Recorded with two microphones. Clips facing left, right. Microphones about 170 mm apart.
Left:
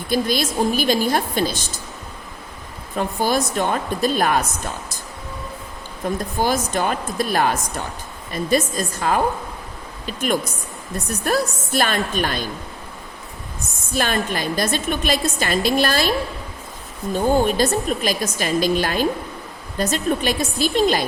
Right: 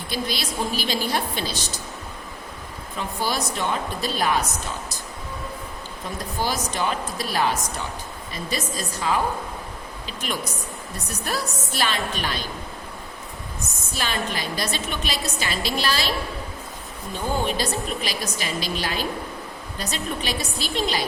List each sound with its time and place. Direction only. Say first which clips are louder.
0.1 s a woman's voice: left 8 dB; 50° left (ahead or behind)
2.9 s a woman's voice: left 7 dB; 50° left (ahead or behind)
6.0 s a woman's voice: left 6 dB; 50° left (ahead or behind)
13.9 s a woman's voice: left 6 dB; 50° left (ahead or behind)
17.2 s a woman's voice: left 8 dB; 50° left (ahead or behind)